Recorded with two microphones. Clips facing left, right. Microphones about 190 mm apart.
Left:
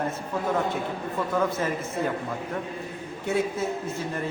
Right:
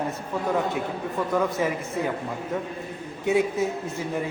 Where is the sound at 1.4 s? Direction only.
15° right (ahead or behind).